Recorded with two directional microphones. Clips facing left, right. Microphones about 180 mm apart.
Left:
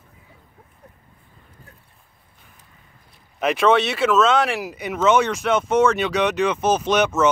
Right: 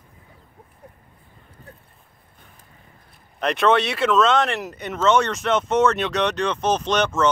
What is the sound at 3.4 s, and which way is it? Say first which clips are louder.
Speech: left 1 dB; 5° left (ahead or behind).